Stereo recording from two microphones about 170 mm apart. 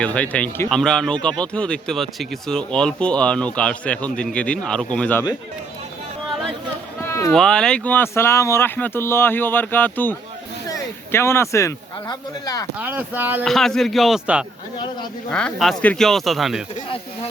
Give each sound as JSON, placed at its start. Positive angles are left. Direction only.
{"t": 0.0, "sound": "speech", "side_deg": 5}
{"t": 7.0, "sound": "a sound", "side_deg": 15}
{"t": 7.3, "sound": "speech", "side_deg": 5}
{"t": 12.8, "sound": "speech", "side_deg": -10}
{"t": 13.4, "sound": "speech", "side_deg": 0}